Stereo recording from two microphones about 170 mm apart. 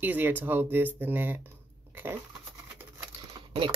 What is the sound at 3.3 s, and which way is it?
Typing, 30° right (ahead or behind).